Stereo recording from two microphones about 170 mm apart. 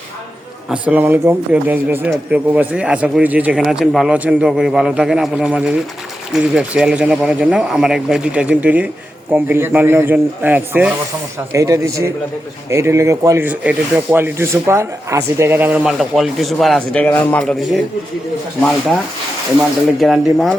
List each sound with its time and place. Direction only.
0.7 s speech: 10° right (ahead or behind)
20.0 s speech: centre (ahead or behind)